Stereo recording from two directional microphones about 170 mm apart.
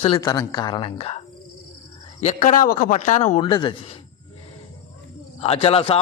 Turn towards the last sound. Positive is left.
turn(degrees=35)  # may be behind; listen again after turning